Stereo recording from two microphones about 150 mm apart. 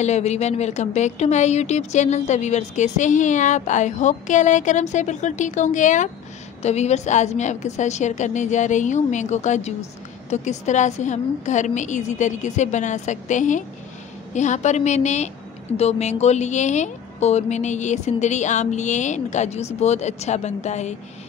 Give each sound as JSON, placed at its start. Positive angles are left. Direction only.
{"t": 0.0, "sound": "speech", "side_deg": 50}